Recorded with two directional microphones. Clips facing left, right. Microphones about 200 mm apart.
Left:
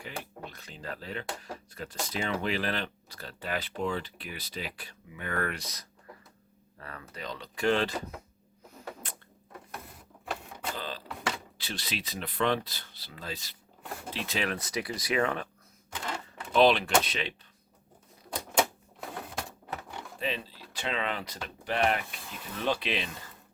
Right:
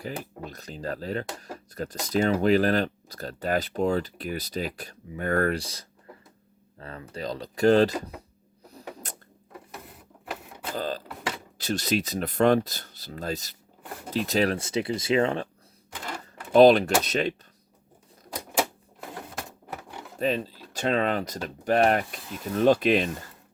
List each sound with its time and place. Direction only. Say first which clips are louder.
0.0 s speech: right 6 dB; 40° right (ahead or behind)
8.8 s a sound: right 2 dB; 15° right (ahead or behind)
10.8 s a sound: right 12 dB; 45° right (ahead or behind)
11.5 s speech: right 12 dB; 45° right (ahead or behind); by 15.4 s 25° right (ahead or behind)
16.2 s typewriter: right 7 dB; 40° right (ahead or behind)
17.0 s speech: right 8 dB; 45° right (ahead or behind)
18.3 s typewriter: even; 5° right (ahead or behind)
20.1 s speech: right 9 dB; 45° right (ahead or behind)